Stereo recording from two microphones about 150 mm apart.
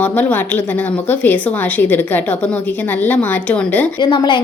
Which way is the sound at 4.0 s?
30° left (ahead or behind).